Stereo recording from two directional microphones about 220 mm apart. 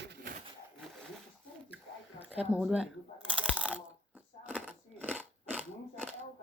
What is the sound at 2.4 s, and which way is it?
Speech, 5° right (ahead or behind).